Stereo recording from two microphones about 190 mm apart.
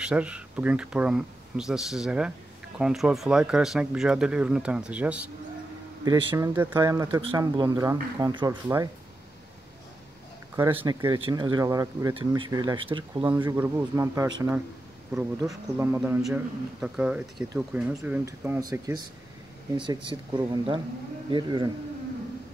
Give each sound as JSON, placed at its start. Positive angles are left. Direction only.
{"t": 0.0, "sound": "speech", "side_deg": -5}
{"t": 6.0, "sound": "a man's voice", "side_deg": -20}
{"t": 10.5, "sound": "speech", "side_deg": -10}
{"t": 10.9, "sound": "speech", "side_deg": -20}
{"t": 13.4, "sound": "a man's voice", "side_deg": -15}
{"t": 18.6, "sound": "speech", "side_deg": -20}